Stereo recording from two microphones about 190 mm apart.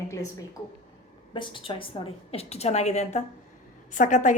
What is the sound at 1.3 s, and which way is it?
A woman's voice, 25° left (ahead or behind).